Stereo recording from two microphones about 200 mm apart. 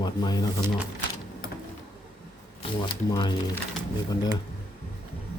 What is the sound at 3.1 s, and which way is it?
Speech, 20° left (ahead or behind).